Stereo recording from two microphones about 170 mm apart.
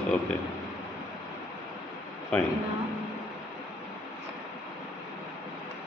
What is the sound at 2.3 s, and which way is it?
Speech, 5° left (ahead or behind).